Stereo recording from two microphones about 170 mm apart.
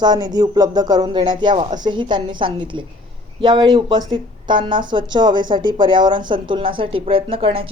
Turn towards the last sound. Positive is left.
turn(degrees=-35)  # may be behind; listen again after turning